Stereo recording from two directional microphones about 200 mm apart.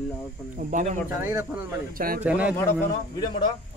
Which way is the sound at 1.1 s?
10° right (ahead or behind).